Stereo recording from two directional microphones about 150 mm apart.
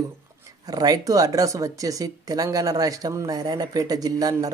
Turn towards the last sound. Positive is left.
turn(degrees=-25)  # may be behind; listen again after turning